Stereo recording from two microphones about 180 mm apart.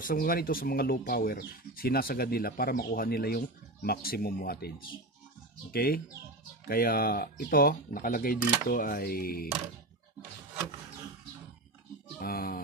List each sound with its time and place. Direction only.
0.0 s speech: 55° left (ahead or behind)
12.2 s speech: 55° left (ahead or behind)